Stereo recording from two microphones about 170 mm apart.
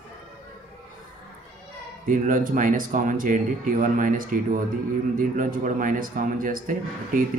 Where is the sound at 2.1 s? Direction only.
50° right (ahead or behind).